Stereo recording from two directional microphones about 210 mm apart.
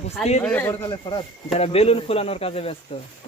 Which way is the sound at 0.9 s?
25° left (ahead or behind).